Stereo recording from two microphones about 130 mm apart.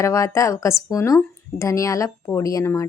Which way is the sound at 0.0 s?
25° left (ahead or behind).